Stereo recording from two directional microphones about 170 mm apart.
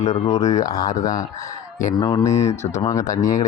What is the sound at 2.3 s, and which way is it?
Speech, 45° left (ahead or behind).